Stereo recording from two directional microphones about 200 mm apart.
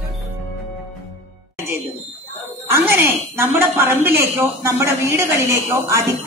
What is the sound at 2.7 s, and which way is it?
A woman's voice, 10° right (ahead or behind).